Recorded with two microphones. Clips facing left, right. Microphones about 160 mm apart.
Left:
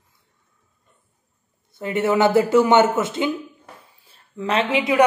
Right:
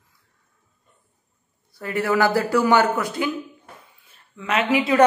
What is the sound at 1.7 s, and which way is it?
A woman's voice, 20° left (ahead or behind).